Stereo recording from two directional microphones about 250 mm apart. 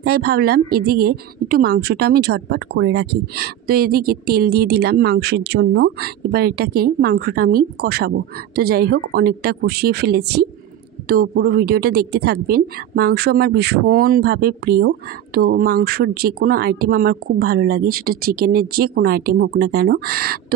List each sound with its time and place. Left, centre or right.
0.0 s speech: right